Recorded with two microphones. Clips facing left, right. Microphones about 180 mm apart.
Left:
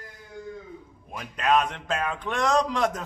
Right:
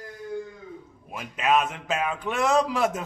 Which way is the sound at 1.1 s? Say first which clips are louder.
Even; 5° right (ahead or behind).